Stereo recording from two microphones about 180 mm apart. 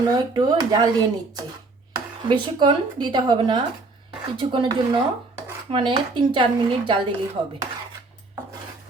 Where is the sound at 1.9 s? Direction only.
25° right (ahead or behind).